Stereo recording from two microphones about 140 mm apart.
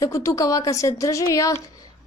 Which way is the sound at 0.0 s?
20° left (ahead or behind).